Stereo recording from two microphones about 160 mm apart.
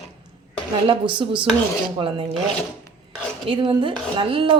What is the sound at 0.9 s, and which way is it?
Speech, 30° right (ahead or behind).